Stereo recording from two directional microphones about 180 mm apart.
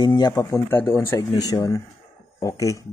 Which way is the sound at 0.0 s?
25° left (ahead or behind).